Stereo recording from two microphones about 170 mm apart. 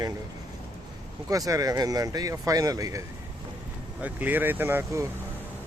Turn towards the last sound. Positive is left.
turn(degrees=-15)  # may be behind; listen again after turning